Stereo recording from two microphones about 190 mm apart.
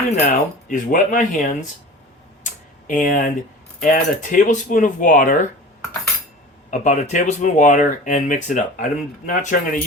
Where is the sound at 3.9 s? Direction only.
40° left (ahead or behind).